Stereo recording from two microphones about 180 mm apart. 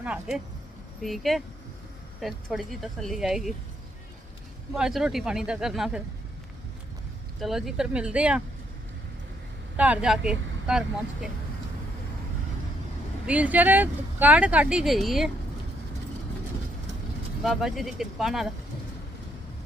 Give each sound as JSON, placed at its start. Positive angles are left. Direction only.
{"t": 0.0, "sound": "speech", "side_deg": -5}
{"t": 4.7, "sound": "speech", "side_deg": 0}
{"t": 7.3, "sound": "speech", "side_deg": 0}
{"t": 9.7, "sound": "speech", "side_deg": -5}
{"t": 13.2, "sound": "speech", "side_deg": -10}
{"t": 17.4, "sound": "speech", "side_deg": 0}